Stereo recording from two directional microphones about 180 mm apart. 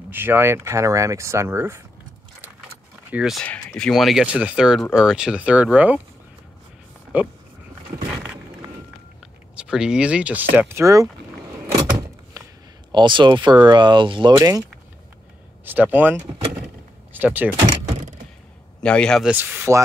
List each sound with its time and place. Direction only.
0.1 s speech: 10° right (ahead or behind)
3.1 s speech: 5° right (ahead or behind)
3.4 s speech: 5° left (ahead or behind)
7.1 s speech: 10° right (ahead or behind)
8.1 s a sound: 5° right (ahead or behind)
9.6 s speech: 5° right (ahead or behind)
12.9 s speech: 25° right (ahead or behind)
15.6 s speech: 10° right (ahead or behind)
18.8 s speech: 5° left (ahead or behind)
19.3 s speech: 10° right (ahead or behind)